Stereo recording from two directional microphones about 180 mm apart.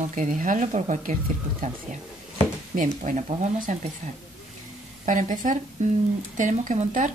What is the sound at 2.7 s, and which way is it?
Speech, 45° right (ahead or behind).